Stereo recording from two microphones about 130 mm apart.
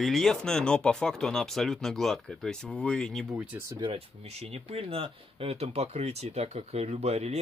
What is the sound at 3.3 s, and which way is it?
Speech, 10° right (ahead or behind).